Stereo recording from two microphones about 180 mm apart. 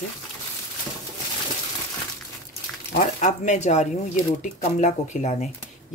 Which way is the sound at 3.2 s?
40° left (ahead or behind).